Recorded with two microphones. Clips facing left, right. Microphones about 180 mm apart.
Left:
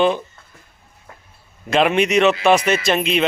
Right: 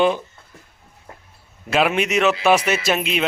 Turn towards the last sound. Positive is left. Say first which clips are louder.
# left 3 dB
turn(degrees=-5)  # may be behind; listen again after turning